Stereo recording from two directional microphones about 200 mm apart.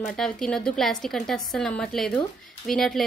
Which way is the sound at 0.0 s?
5° left (ahead or behind).